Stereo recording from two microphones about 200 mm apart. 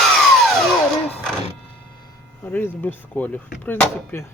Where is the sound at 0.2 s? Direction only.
Centre (ahead or behind).